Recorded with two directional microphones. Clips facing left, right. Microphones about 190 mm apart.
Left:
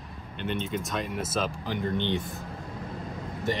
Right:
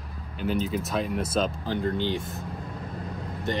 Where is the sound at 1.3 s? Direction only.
15° left (ahead or behind).